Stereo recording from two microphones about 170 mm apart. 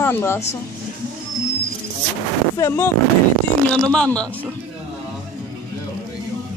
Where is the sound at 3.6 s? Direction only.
5° left (ahead or behind).